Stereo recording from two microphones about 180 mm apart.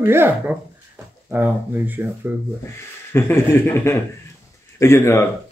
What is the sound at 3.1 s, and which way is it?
Speech, 15° left (ahead or behind).